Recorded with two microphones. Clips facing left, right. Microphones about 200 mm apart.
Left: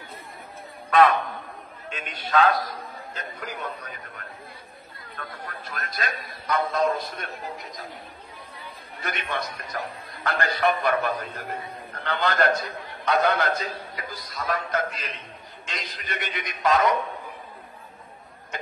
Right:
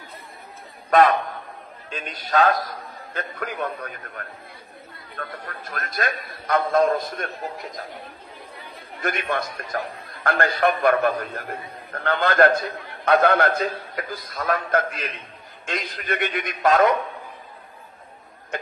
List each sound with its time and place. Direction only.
1.9 s a man's voice: 40° right (ahead or behind); by 3.9 s 55° right (ahead or behind)
5.6 s a man's voice: 50° right (ahead or behind)
9.0 s a man's voice: 50° right (ahead or behind)